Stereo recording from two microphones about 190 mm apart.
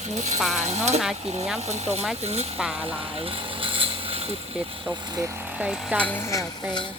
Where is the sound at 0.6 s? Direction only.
35° right (ahead or behind).